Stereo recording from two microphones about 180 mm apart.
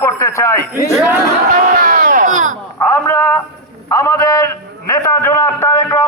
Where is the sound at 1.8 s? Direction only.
50° right (ahead or behind).